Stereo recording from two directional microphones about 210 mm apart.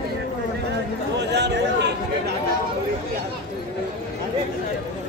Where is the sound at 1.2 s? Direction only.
55° right (ahead or behind).